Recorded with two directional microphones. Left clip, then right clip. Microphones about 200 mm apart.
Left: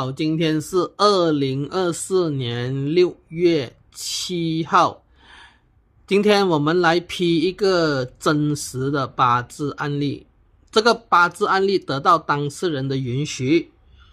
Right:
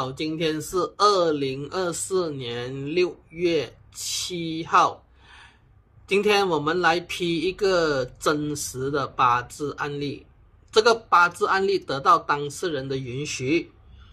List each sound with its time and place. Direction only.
0.0 s speech: 60° left (ahead or behind)